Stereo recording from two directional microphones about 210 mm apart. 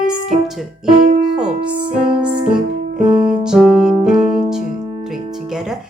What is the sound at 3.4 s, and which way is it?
Music, 5° right (ahead or behind).